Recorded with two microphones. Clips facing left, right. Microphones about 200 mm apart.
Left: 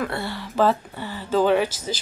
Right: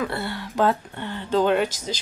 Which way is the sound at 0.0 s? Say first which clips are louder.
Even; centre (ahead or behind).